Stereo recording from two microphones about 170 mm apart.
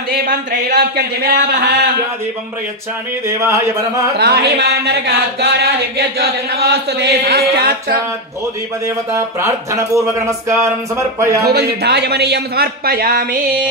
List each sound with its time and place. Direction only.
0.1 s speech: 60° right (ahead or behind)
3.3 s speech: 15° right (ahead or behind)
4.2 s speech: 80° right
8.8 s speech: 15° right (ahead or behind)
11.4 s speech: 70° right (ahead or behind)